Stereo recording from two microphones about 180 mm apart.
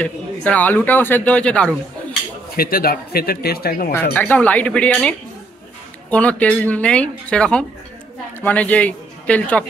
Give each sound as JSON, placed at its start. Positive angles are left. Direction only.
{"t": 0.0, "sound": "speech", "side_deg": 10}
{"t": 2.5, "sound": "speech", "side_deg": 55}
{"t": 3.9, "sound": "a man's voice", "side_deg": 10}